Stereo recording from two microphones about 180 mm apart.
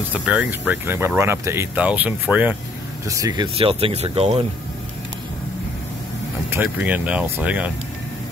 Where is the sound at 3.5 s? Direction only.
30° right (ahead or behind).